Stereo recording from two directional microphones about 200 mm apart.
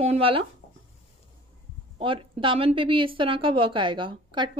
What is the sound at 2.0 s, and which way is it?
A woman's voice, 25° right (ahead or behind).